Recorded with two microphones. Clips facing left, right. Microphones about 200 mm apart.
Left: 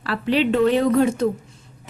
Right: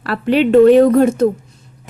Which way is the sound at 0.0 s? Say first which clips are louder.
Right 6 dB; 55° right (ahead or behind).